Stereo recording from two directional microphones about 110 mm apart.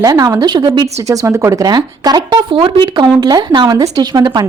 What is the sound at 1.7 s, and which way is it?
Speech, 40° right (ahead or behind).